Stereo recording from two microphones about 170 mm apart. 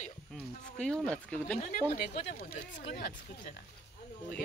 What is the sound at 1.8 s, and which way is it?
Speech, 40° left (ahead or behind).